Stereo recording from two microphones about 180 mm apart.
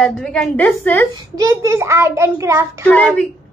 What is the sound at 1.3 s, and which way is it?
A child's voice, 20° right (ahead or behind).